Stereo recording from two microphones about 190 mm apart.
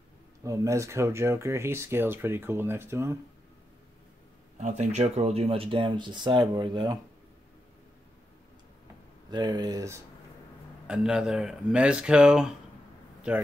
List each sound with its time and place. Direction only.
0.4 s speech: 15° right (ahead or behind)
4.6 s speech: 35° right (ahead or behind)
9.3 s speech: 20° right (ahead or behind)
10.9 s speech: 5° right (ahead or behind)